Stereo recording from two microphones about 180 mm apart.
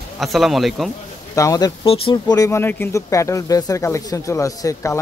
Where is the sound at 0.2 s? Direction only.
Centre (ahead or behind).